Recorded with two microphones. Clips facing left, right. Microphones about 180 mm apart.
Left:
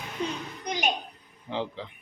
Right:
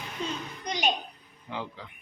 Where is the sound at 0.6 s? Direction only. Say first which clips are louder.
Even; 10° left (ahead or behind).